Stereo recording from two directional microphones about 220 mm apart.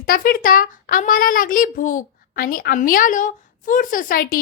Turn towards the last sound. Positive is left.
turn(degrees=40)  # may be behind; listen again after turning